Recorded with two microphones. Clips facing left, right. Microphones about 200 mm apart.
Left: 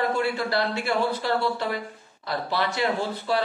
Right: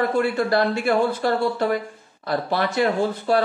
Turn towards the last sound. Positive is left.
turn(degrees=-50)  # may be behind; listen again after turning